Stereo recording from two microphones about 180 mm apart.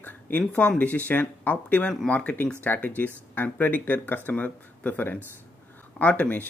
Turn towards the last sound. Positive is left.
turn(degrees=10)  # may be behind; listen again after turning